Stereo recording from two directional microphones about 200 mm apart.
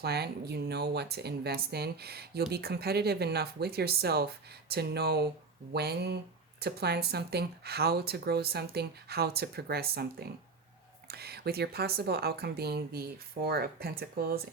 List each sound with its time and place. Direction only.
0.0 s speech: 55° right (ahead or behind)